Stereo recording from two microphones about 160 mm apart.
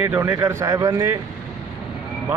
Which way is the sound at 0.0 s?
15° right (ahead or behind).